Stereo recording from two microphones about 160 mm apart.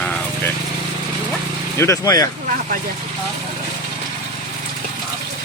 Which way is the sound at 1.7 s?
15° left (ahead or behind).